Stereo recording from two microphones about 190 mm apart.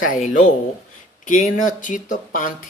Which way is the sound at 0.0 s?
40° left (ahead or behind).